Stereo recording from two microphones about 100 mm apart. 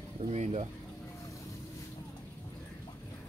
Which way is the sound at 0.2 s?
70° right (ahead or behind).